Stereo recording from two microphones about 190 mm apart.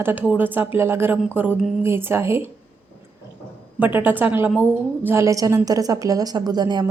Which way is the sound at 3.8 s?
10° right (ahead or behind).